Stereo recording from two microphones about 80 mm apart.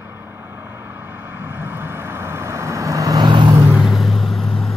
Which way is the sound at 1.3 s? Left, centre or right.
Right.